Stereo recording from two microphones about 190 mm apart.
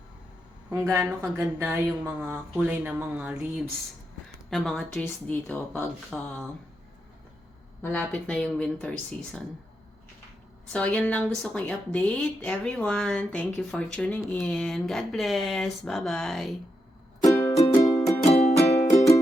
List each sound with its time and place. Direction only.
0.7 s a woman's voice: 15° right (ahead or behind); by 6.5 s 5° left (ahead or behind)
7.8 s a woman's voice: 5° left (ahead or behind)
10.7 s a woman's voice: 5° left (ahead or behind)
17.2 s music: 15° left (ahead or behind)
18.3 s music: 35° left (ahead or behind)